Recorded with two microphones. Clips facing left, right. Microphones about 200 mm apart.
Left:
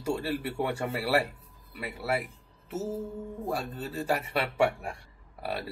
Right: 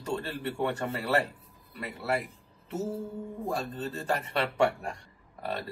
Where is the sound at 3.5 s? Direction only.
10° left (ahead or behind).